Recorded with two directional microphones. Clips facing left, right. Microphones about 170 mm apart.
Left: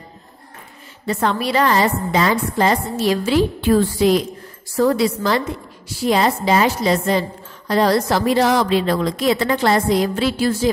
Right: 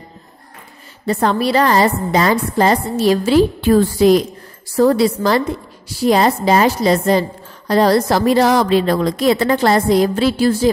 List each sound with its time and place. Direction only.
1.0 s a woman's voice: 35° right (ahead or behind)